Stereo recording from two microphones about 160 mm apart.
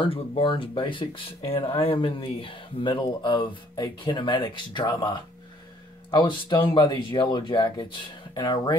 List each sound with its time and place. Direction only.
0.0 s speech: 35° left (ahead or behind)
6.1 s speech: 30° left (ahead or behind)